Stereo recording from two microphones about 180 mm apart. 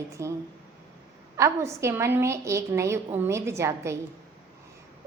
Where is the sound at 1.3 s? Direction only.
15° right (ahead or behind).